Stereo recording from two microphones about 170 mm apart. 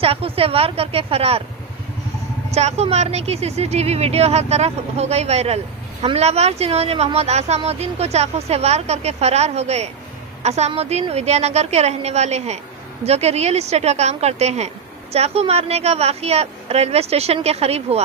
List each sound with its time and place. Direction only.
0.0 s speech: 35° right (ahead or behind)
2.5 s speech: 40° right (ahead or behind)